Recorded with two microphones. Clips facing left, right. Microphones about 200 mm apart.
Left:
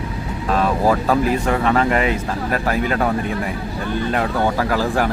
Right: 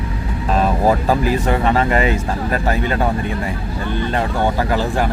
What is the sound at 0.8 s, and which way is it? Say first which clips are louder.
Speech: right 2 dB; 25° right (ahead or behind).